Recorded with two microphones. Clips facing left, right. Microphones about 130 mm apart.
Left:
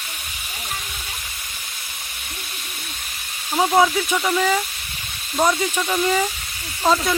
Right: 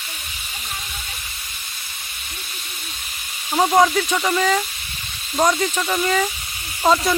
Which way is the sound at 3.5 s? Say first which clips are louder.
Right 1 dB; 10° right (ahead or behind).